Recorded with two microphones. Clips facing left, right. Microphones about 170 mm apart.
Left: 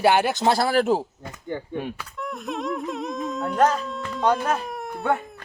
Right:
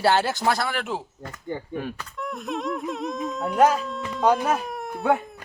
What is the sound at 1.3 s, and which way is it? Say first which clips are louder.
Speech: left 1 dB; 20° left (ahead or behind).